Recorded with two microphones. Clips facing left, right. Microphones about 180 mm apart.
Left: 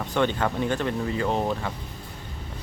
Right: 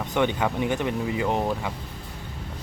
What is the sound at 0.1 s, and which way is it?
Speech, 15° right (ahead or behind).